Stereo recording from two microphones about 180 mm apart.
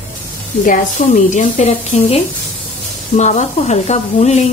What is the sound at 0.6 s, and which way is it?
A woman's voice, 50° left (ahead or behind).